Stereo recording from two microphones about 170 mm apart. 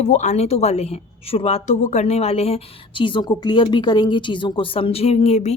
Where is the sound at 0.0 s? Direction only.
45° left (ahead or behind).